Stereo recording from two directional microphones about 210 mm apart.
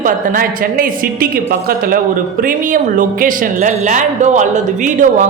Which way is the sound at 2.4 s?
40° right (ahead or behind).